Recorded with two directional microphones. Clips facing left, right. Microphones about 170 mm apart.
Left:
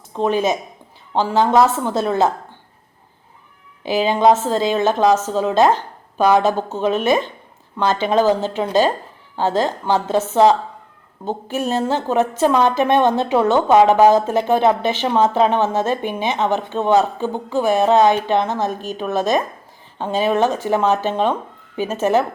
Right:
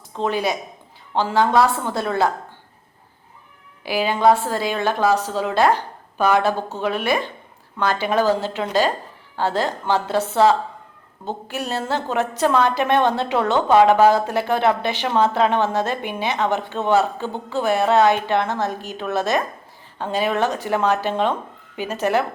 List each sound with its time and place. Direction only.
0.1 s a woman's voice: 15° left (ahead or behind)
3.8 s a woman's voice: 20° left (ahead or behind)
11.6 s a woman's voice: 15° left (ahead or behind)